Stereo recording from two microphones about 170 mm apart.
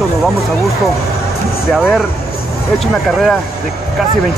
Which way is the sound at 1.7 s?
Centre (ahead or behind).